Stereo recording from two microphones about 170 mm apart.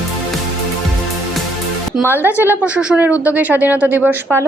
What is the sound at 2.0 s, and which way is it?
A woman's voice, 10° right (ahead or behind).